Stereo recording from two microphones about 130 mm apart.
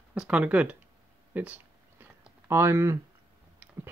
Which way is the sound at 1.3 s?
15° right (ahead or behind).